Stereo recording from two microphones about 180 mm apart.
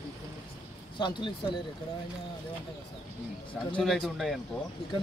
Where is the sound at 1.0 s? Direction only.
25° left (ahead or behind).